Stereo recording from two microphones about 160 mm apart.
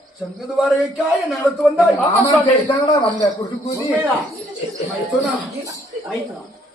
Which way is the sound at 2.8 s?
25° left (ahead or behind).